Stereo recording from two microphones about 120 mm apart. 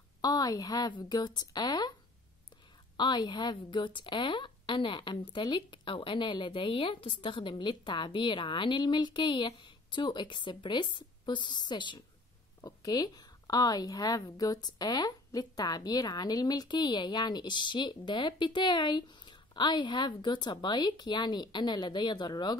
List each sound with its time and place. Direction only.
0.2 s a woman's voice: 30° left (ahead or behind)
3.0 s a woman's voice: 35° left (ahead or behind)